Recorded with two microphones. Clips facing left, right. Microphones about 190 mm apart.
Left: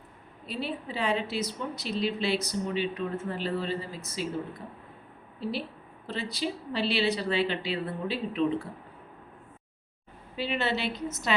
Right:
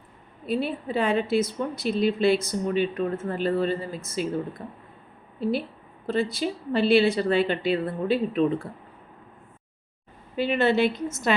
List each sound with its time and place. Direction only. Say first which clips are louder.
0.4 s a woman's voice: right 7 dB; 50° right (ahead or behind)
5.4 s a woman's voice: right 7 dB; 50° right (ahead or behind)
10.3 s a woman's voice: right 8 dB; 50° right (ahead or behind)